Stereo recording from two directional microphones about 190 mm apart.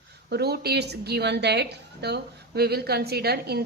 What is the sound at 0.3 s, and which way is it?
A woman's voice, 60° right (ahead or behind).